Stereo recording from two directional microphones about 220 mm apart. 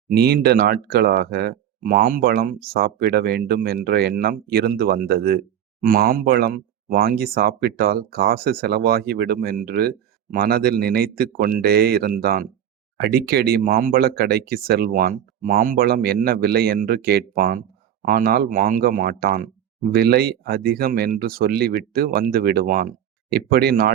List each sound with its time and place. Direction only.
0.1 s speech: 45° right (ahead or behind)